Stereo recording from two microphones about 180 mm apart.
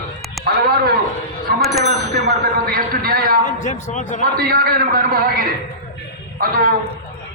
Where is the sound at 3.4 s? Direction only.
45° left (ahead or behind).